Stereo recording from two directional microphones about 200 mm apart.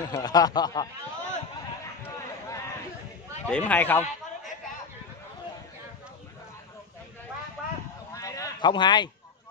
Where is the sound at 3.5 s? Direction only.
5° left (ahead or behind).